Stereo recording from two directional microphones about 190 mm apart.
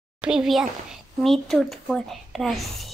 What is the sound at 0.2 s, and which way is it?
A woman's voice, 5° right (ahead or behind).